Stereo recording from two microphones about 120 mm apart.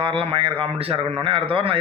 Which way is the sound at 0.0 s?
50° right (ahead or behind).